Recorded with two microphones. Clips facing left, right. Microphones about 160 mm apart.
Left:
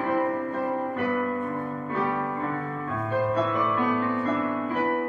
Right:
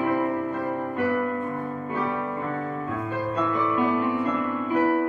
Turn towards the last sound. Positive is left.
turn(degrees=-15)  # may be behind; listen again after turning